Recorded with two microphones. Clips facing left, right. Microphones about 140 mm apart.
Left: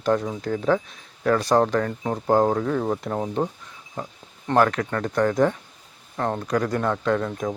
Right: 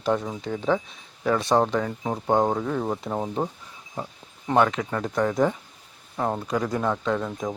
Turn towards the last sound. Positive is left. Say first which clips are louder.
# left 3 dB
turn(degrees=-5)  # may be behind; listen again after turning